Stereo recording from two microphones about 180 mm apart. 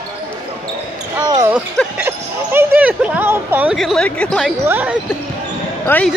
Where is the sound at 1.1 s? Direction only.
20° right (ahead or behind).